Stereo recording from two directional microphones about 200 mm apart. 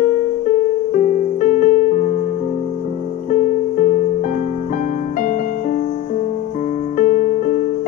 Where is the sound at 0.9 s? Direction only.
40° left (ahead or behind).